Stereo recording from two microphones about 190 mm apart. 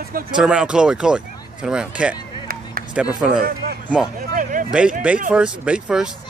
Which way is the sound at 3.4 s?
50° right (ahead or behind).